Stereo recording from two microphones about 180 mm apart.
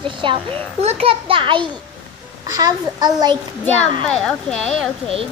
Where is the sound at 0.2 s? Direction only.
30° right (ahead or behind).